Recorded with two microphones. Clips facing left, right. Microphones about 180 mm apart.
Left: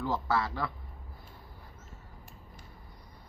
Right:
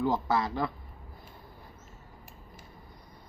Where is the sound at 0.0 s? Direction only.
15° right (ahead or behind).